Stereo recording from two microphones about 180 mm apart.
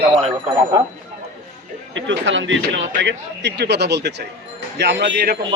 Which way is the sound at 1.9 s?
90° right.